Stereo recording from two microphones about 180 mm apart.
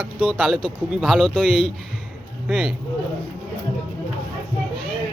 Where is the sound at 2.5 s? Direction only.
5° right (ahead or behind).